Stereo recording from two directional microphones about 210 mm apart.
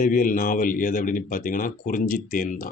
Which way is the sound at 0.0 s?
40° left (ahead or behind).